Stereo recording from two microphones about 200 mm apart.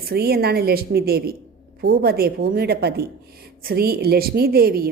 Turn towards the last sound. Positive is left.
turn(degrees=-50)  # may be behind; listen again after turning